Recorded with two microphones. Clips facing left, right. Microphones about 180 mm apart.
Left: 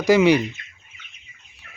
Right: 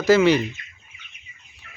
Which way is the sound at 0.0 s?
15° left (ahead or behind).